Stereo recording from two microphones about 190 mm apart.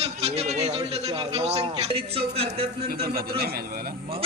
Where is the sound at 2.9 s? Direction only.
55° right (ahead or behind).